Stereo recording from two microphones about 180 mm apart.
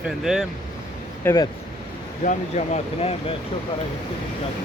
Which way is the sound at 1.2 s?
10° left (ahead or behind).